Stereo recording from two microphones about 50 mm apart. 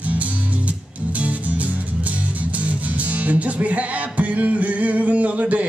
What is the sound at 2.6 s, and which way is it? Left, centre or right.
Music, right.